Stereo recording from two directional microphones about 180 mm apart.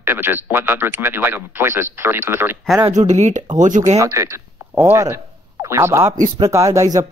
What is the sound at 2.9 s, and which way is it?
Speech, 40° right (ahead or behind).